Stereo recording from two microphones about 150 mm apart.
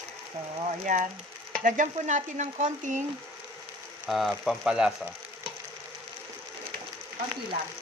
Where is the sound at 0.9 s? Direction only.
55° right (ahead or behind).